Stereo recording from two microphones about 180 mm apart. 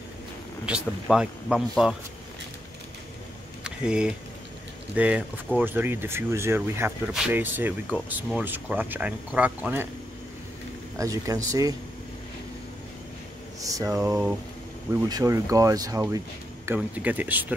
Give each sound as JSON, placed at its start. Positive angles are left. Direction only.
{"t": 0.7, "sound": "speech", "side_deg": -5}
{"t": 3.6, "sound": "a sound", "side_deg": -5}
{"t": 4.9, "sound": "speech", "side_deg": -5}
{"t": 11.0, "sound": "speech", "side_deg": -15}
{"t": 13.6, "sound": "speech", "side_deg": -20}